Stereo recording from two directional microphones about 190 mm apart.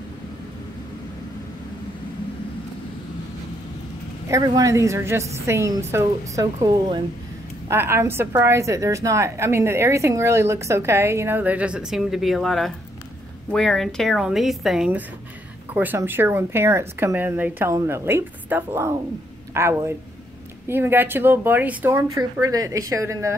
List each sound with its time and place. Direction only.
4.3 s a woman's voice: 20° right (ahead or behind)